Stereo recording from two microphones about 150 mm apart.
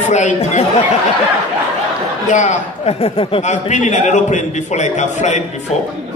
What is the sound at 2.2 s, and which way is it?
A man's voice, 55° left (ahead or behind).